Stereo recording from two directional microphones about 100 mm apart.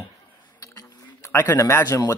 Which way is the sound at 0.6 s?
35° left (ahead or behind).